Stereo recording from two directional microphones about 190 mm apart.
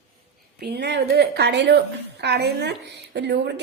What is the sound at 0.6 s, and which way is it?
A woman's voice, 60° right (ahead or behind).